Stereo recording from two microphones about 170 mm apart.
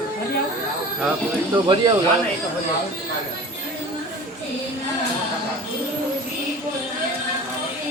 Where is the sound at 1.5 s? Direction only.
25° right (ahead or behind).